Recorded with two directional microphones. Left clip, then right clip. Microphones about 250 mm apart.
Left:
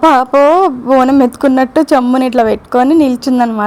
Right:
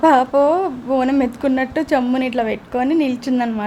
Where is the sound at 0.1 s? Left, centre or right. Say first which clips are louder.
Left 6 dB; left.